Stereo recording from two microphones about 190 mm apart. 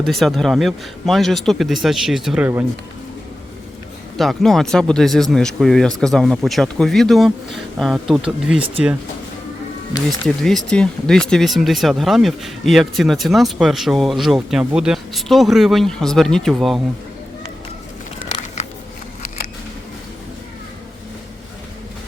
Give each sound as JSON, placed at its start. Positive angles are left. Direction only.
{"t": 0.0, "sound": "speech", "side_deg": 0}
{"t": 4.2, "sound": "speech", "side_deg": 0}
{"t": 9.9, "sound": "speech", "side_deg": 0}
{"t": 18.2, "sound": "a sound", "side_deg": 35}